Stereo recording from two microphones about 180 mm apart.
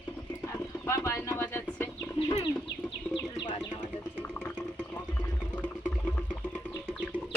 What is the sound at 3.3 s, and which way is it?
Music, 25° left (ahead or behind).